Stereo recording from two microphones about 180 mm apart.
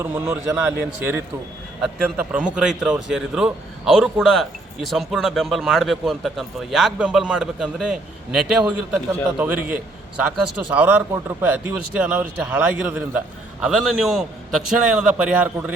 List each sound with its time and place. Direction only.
0.0 s a man's voice: 15° right (ahead or behind)
1.8 s a man's voice: 5° right (ahead or behind)